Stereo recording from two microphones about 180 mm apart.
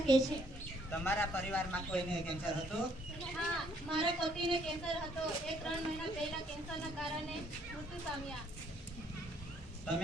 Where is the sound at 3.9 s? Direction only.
25° right (ahead or behind).